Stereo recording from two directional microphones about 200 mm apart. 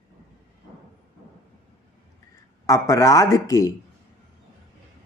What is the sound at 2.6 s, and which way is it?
Speech, 15° left (ahead or behind).